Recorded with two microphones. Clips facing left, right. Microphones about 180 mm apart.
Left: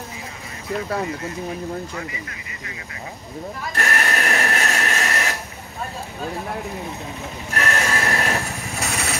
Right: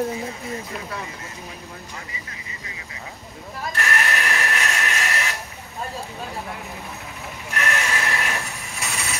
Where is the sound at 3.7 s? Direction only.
40° left (ahead or behind).